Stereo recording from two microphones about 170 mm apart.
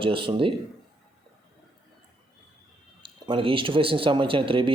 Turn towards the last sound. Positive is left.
turn(degrees=-30)  # may be behind; listen again after turning